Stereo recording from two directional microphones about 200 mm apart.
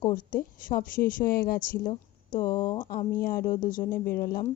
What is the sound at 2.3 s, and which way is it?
Speech, 20° left (ahead or behind).